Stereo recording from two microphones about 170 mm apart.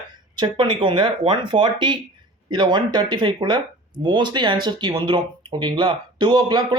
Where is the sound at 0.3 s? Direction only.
30° right (ahead or behind).